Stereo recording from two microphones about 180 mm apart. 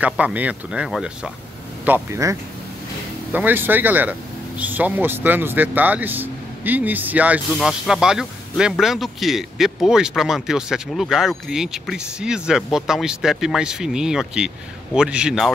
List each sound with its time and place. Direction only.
0.0 s speech: 10° right (ahead or behind)
1.9 s speech: 15° right (ahead or behind)
3.3 s speech: 10° right (ahead or behind)